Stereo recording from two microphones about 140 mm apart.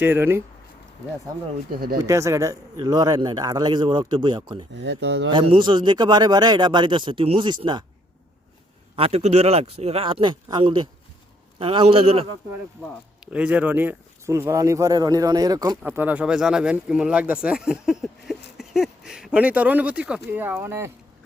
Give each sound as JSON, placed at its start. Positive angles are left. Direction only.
{"t": 0.0, "sound": "speech", "side_deg": -15}
{"t": 2.0, "sound": "a man's voice", "side_deg": -20}
{"t": 9.0, "sound": "a man's voice", "side_deg": -45}
{"t": 13.3, "sound": "speech", "side_deg": -10}
{"t": 15.8, "sound": "speech", "side_deg": -10}